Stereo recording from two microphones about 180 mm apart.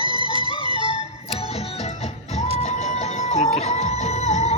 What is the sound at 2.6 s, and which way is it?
Music, 40° left (ahead or behind).